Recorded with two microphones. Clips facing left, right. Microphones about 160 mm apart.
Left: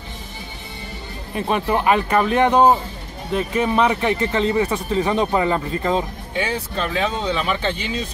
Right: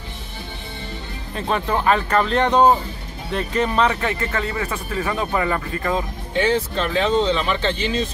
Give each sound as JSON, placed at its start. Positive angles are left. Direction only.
{"t": 1.3, "sound": "speech", "side_deg": 15}
{"t": 6.4, "sound": "speech", "side_deg": 10}